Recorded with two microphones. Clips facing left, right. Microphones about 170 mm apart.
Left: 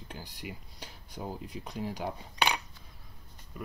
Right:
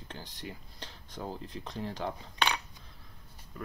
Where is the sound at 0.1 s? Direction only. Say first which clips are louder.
Even; 10° left (ahead or behind).